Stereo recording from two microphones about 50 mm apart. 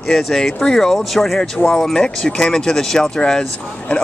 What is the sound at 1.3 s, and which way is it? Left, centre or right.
Speech, centre.